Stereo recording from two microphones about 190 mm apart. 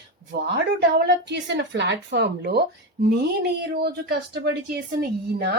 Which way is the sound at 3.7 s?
55° right (ahead or behind).